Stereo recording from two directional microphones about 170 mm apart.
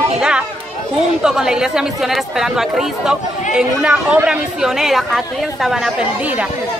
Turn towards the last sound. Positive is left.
turn(degrees=-5)  # may be behind; listen again after turning